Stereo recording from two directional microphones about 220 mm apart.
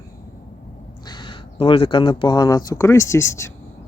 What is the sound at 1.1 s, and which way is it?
Speech, 20° left (ahead or behind).